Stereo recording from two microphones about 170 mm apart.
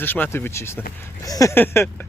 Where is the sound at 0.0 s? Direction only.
10° left (ahead or behind).